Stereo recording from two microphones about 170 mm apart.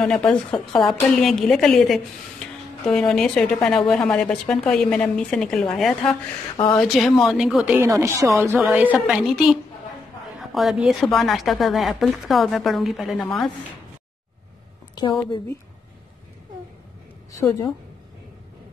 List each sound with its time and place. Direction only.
0.0 s a woman's voice: 5° left (ahead or behind)
6.5 s a woman's voice: 30° left (ahead or behind)
6.8 s a woman's voice: centre (ahead or behind)
15.0 s a woman's voice: 30° left (ahead or behind)